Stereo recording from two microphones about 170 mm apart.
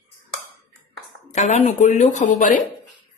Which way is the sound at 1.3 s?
45° left (ahead or behind).